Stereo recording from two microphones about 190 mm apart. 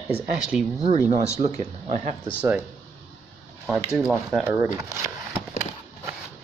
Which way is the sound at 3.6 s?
5° right (ahead or behind).